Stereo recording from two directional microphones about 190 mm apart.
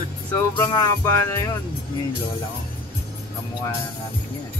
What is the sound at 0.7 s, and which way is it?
Music, 20° left (ahead or behind).